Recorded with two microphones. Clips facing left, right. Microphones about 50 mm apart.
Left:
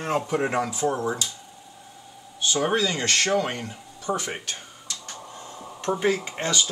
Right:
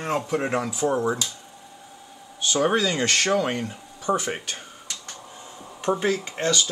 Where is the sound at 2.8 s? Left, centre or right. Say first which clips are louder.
Right 1 dB; centre.